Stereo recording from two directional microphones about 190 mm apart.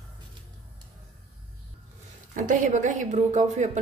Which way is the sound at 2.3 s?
40° right (ahead or behind).